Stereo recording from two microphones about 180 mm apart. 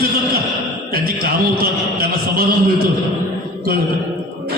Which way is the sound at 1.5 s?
55° right (ahead or behind).